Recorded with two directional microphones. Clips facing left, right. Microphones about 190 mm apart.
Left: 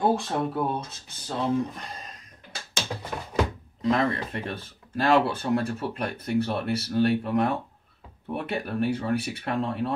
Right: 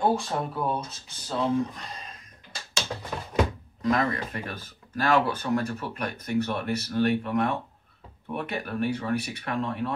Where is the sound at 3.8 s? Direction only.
30° left (ahead or behind).